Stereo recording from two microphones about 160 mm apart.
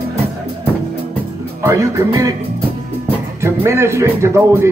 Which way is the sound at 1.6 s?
20° right (ahead or behind).